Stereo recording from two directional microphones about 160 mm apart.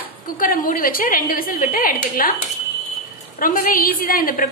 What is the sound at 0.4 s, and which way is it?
A woman's voice, 60° left (ahead or behind).